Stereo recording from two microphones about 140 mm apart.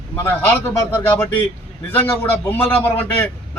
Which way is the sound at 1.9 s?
15° left (ahead or behind).